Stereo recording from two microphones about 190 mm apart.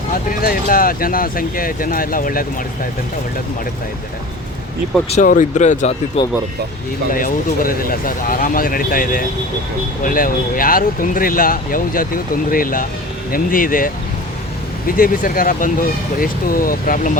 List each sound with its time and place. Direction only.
0.3 s speech: 50° left (ahead or behind)
5.0 s speech: 35° left (ahead or behind)
7.1 s speech: 45° left (ahead or behind)